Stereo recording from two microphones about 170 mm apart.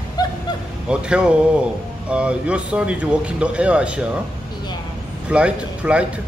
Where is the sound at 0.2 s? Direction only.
25° left (ahead or behind).